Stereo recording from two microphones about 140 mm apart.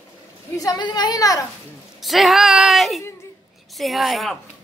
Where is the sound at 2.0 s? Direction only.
Centre (ahead or behind).